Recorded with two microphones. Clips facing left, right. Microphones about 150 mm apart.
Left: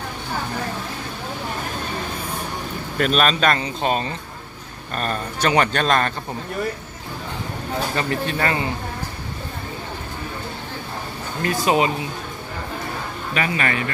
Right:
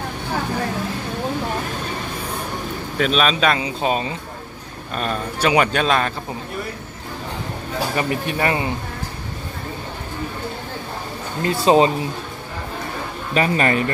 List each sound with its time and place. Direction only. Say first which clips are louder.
3.0 s speech: even; centre (ahead or behind)
7.9 s speech: right 3 dB; 15° right (ahead or behind)
11.4 s speech: right 4 dB; 30° right (ahead or behind)
13.3 s speech: right 5 dB; 35° right (ahead or behind)